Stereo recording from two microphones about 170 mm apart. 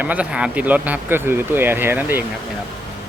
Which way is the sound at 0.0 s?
10° right (ahead or behind).